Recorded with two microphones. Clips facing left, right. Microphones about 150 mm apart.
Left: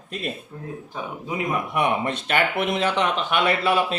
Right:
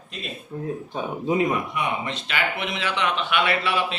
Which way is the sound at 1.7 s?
55° left (ahead or behind).